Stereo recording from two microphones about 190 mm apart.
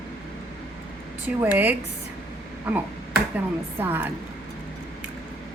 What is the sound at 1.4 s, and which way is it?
Speech, 10° right (ahead or behind).